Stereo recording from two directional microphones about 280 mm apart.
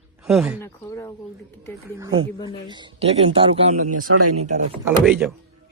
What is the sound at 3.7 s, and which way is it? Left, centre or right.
Speech, right.